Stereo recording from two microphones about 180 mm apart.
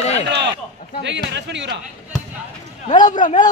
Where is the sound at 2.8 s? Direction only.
45° left (ahead or behind).